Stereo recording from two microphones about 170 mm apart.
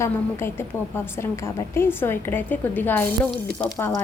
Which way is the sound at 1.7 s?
15° left (ahead or behind).